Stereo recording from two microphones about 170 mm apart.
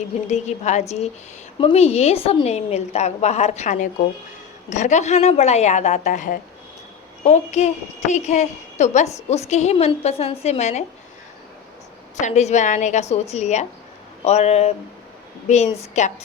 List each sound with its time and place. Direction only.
0.3 s a woman's voice: 45° left (ahead or behind)
12.1 s a woman's voice: 40° left (ahead or behind)